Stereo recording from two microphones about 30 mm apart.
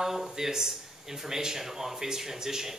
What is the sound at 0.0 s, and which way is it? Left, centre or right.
Speech, centre.